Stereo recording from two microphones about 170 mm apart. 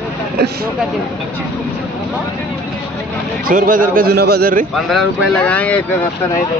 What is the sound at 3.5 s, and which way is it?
A man's voice, 50° right (ahead or behind).